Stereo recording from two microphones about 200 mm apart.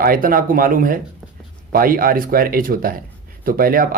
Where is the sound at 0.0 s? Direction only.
45° right (ahead or behind).